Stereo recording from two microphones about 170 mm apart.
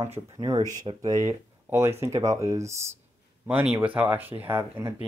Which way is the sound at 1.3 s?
15° right (ahead or behind).